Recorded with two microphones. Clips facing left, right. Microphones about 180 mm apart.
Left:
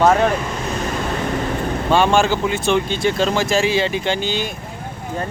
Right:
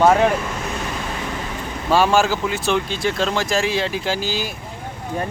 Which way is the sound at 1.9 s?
5° right (ahead or behind).